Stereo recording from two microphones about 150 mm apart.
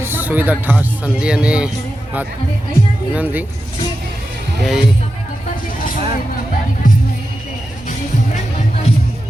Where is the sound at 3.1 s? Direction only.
10° right (ahead or behind).